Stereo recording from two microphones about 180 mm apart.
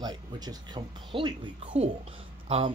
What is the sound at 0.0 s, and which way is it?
Speech, 25° right (ahead or behind).